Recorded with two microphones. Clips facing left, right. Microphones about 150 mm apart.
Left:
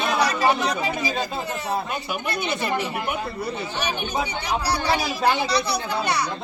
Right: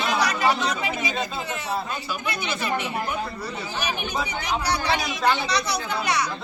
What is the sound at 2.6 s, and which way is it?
Speech, 30° left (ahead or behind).